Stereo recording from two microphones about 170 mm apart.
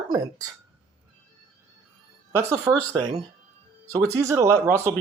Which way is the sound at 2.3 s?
15° right (ahead or behind).